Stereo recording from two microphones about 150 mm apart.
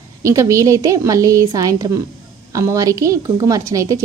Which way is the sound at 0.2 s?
20° right (ahead or behind).